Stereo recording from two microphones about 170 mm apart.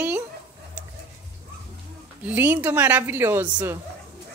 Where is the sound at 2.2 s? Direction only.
10° right (ahead or behind).